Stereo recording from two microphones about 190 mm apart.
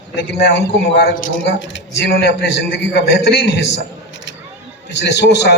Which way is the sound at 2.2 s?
60° left (ahead or behind).